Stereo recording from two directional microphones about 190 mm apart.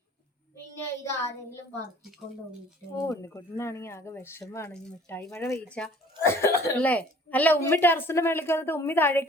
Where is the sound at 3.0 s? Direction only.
15° left (ahead or behind).